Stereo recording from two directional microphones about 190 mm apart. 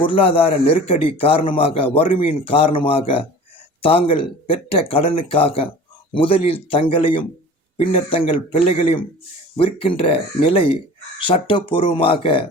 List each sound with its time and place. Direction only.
0.0 s a man's voice: 30° left (ahead or behind)